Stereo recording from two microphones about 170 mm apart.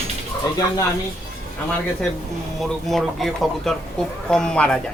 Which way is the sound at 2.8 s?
Centre (ahead or behind).